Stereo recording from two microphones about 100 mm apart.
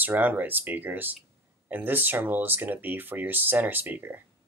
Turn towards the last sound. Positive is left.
turn(degrees=-20)  # may be behind; listen again after turning